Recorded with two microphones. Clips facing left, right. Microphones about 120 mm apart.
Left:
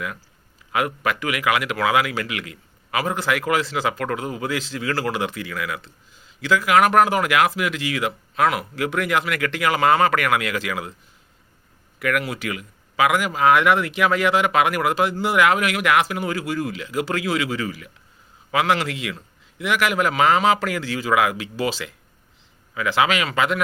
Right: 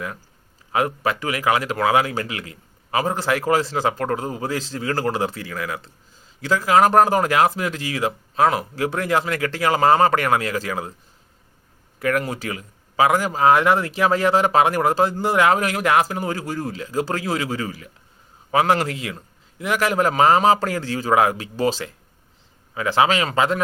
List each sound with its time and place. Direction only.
0.7 s speech: 30° right (ahead or behind)
11.9 s speech: 35° right (ahead or behind)